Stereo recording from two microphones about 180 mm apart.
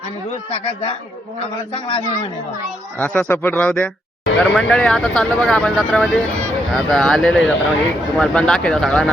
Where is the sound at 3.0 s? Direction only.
10° left (ahead or behind).